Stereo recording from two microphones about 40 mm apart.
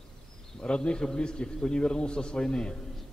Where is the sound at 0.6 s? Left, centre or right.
Left.